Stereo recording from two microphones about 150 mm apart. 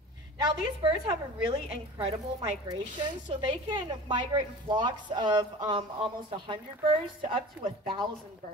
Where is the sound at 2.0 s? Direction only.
40° right (ahead or behind).